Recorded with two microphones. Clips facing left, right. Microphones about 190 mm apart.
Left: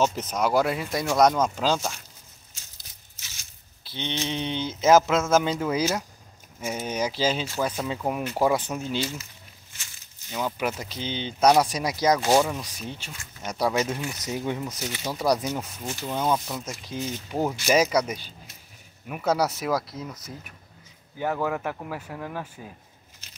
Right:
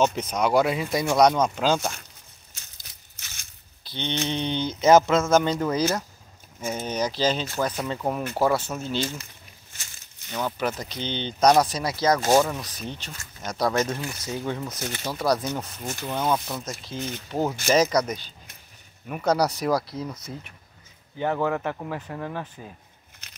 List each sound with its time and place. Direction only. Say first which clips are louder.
0.0 s speech: right 1 dB; 5° left (ahead or behind)
2.5 s a sound: right 1 dB; 60° right (ahead or behind)
3.9 s speech: right 2 dB; 5° left (ahead or behind)
10.3 s speech: right 1 dB; 10° left (ahead or behind)
14.8 s speech: right 1 dB; 50° right (ahead or behind)
15.0 s speech: even; 15° left (ahead or behind)
21.2 s speech: right 2 dB; 5° left (ahead or behind)